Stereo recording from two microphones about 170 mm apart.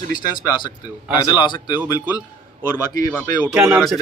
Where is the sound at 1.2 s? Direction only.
25° left (ahead or behind).